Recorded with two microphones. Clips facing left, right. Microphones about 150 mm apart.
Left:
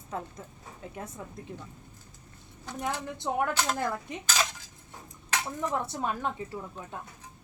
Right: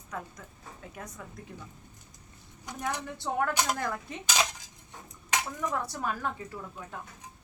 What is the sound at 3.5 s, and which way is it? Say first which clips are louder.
Speech: even; 15° right (ahead or behind).